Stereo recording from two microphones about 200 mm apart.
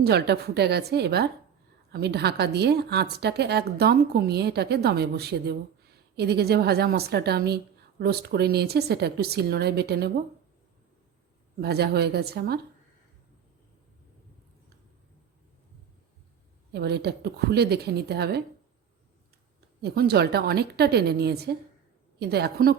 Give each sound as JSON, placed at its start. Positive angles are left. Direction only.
{"t": 0.0, "sound": "a woman's voice", "side_deg": -55}
{"t": 11.6, "sound": "a woman's voice", "side_deg": -55}
{"t": 16.7, "sound": "a woman's voice", "side_deg": -55}
{"t": 19.8, "sound": "a woman's voice", "side_deg": -55}